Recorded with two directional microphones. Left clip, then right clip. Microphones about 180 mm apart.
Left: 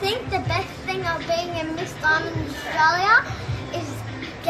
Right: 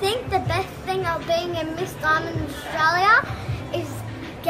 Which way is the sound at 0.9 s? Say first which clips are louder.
Right 1 dB; 20° right (ahead or behind).